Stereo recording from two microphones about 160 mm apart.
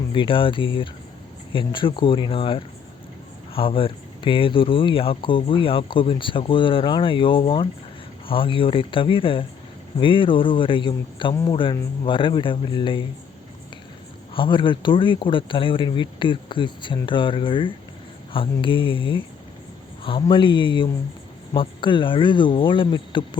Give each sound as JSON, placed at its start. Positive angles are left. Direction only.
{"t": 0.1, "sound": "speech", "side_deg": 30}
{"t": 14.3, "sound": "speech", "side_deg": 30}